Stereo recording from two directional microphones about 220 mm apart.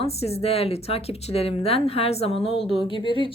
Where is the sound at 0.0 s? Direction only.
30° left (ahead or behind).